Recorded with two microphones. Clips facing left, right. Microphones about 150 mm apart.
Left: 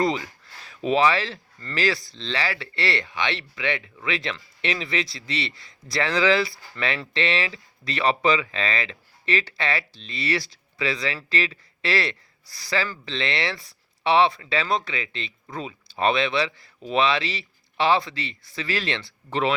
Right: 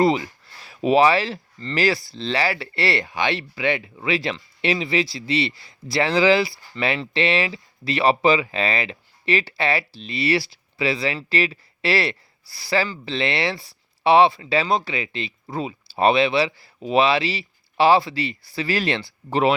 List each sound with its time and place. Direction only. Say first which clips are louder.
0.9 s speech: right 4 dB; 35° right (ahead or behind)
1.5 s speech: right 6 dB; 25° right (ahead or behind)
2.1 s speech: right 5 dB; 40° right (ahead or behind)